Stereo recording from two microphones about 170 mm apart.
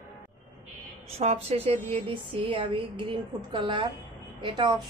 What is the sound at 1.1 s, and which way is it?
A woman's voice, 40° right (ahead or behind).